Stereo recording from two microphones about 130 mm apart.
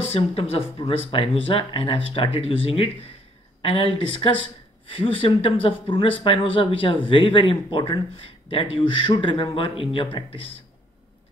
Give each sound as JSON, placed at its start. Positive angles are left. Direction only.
{"t": 0.1, "sound": "speech", "side_deg": 50}